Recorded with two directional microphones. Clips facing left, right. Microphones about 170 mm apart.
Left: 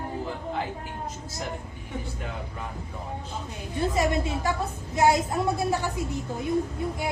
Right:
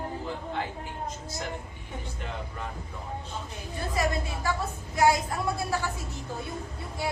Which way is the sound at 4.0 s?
20° left (ahead or behind).